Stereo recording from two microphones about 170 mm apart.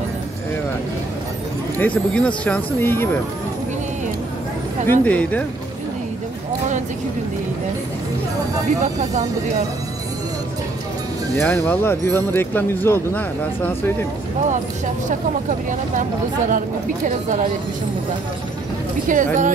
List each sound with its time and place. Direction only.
1.8 s speech: 5° left (ahead or behind)
4.8 s speech: 10° left (ahead or behind)
8.8 s speech: 40° right (ahead or behind)
11.4 s speech: 10° left (ahead or behind)
16.0 s speech: 50° right (ahead or behind)
19.0 s speech: 50° right (ahead or behind)